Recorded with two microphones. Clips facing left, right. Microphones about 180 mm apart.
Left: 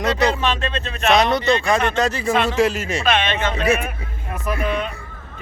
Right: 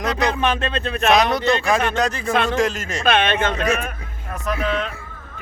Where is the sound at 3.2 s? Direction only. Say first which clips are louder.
Right 2 dB; 55° right (ahead or behind).